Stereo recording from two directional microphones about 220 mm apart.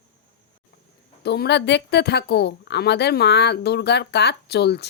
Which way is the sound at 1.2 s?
50° left (ahead or behind).